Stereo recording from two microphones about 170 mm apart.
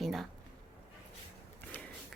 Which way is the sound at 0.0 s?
Centre (ahead or behind).